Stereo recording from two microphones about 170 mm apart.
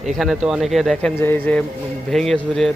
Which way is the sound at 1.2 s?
10° left (ahead or behind).